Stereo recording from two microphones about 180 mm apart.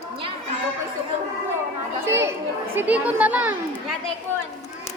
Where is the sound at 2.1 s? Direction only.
15° right (ahead or behind).